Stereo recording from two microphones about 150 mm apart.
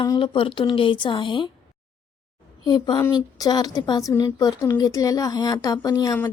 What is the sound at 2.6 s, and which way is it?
A woman's voice, 30° left (ahead or behind).